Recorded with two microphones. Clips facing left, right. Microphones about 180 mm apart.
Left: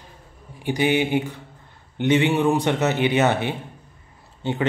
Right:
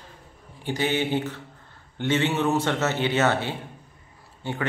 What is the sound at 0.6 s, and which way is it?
Speech, 15° left (ahead or behind).